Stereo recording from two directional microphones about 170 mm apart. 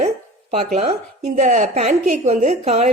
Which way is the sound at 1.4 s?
45° right (ahead or behind).